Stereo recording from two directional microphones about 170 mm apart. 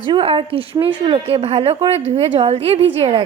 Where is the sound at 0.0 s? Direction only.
30° right (ahead or behind).